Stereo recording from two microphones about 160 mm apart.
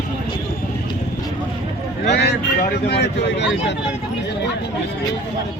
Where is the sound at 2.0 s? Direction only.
90° left.